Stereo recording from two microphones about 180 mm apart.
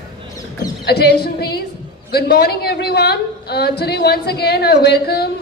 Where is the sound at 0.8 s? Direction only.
65° left (ahead or behind).